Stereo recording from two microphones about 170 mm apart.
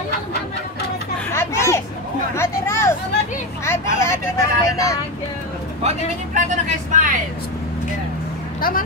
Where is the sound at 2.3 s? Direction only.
15° left (ahead or behind).